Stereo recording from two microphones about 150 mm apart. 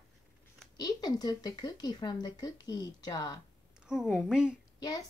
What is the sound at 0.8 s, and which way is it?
Speech, 25° left (ahead or behind).